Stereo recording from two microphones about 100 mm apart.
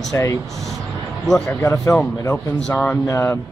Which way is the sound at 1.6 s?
30° left (ahead or behind).